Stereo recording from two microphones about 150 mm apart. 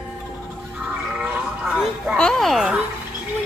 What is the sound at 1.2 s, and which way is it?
A child's voice, 5° right (ahead or behind).